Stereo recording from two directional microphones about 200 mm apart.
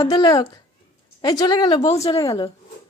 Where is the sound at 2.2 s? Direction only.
15° left (ahead or behind).